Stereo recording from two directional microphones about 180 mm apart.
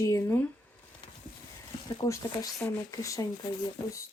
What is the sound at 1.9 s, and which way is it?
Speech, 20° left (ahead or behind).